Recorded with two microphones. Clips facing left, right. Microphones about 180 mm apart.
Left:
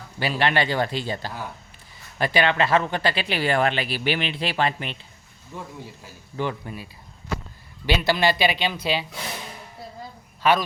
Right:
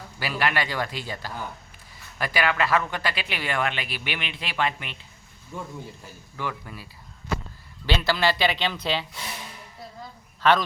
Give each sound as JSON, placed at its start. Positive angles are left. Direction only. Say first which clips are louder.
{"t": 0.2, "sound": "a man's voice", "louder": "left 4 dB", "side_deg": 25}
{"t": 6.3, "sound": "a man's voice", "louder": "left 5 dB", "side_deg": 30}
{"t": 7.9, "sound": "speech", "louder": "left 2 dB", "side_deg": 15}
{"t": 10.4, "sound": "speech", "louder": "even", "side_deg": 10}